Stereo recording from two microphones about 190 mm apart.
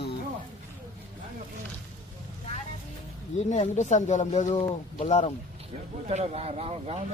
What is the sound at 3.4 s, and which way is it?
Speech, 35° left (ahead or behind).